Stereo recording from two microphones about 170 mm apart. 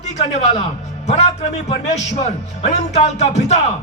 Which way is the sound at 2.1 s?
40° left (ahead or behind).